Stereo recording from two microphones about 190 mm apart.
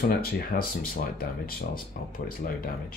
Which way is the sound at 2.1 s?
50° left (ahead or behind).